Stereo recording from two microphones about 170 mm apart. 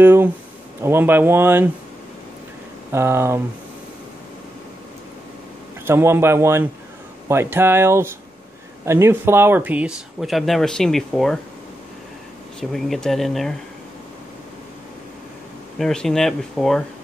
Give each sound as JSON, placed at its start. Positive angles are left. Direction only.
{"t": 0.0, "sound": "speech", "side_deg": -10}
{"t": 2.9, "sound": "speech", "side_deg": -15}
{"t": 5.9, "sound": "speech", "side_deg": -15}
{"t": 12.5, "sound": "speech", "side_deg": 0}
{"t": 15.8, "sound": "speech", "side_deg": 5}